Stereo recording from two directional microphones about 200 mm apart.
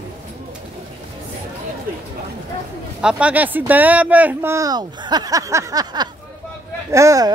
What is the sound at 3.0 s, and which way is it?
Speech, 5° right (ahead or behind).